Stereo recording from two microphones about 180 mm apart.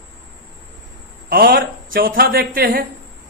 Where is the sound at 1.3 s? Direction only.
55° right (ahead or behind).